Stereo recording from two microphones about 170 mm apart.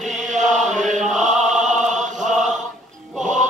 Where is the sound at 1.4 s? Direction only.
45° right (ahead or behind).